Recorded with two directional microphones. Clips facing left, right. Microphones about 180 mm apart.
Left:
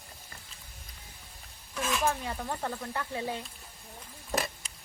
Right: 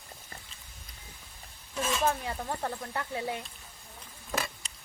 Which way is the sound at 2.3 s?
10° right (ahead or behind).